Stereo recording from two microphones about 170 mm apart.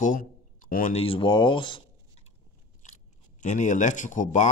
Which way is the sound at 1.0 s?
30° left (ahead or behind).